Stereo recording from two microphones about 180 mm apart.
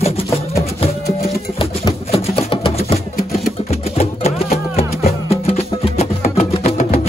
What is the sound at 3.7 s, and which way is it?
Music, 35° left (ahead or behind).